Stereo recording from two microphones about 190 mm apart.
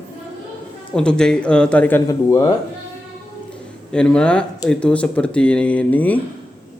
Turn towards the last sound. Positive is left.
turn(degrees=10)  # may be behind; listen again after turning